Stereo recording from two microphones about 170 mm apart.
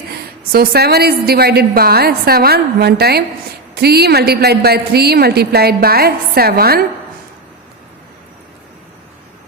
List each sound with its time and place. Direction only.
0.5 s a woman's voice: 65° right (ahead or behind)